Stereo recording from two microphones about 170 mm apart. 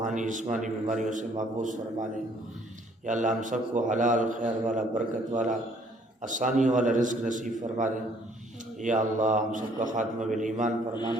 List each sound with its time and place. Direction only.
0.0 s a man's voice: 45° right (ahead or behind)
3.1 s a man's voice: 50° right (ahead or behind)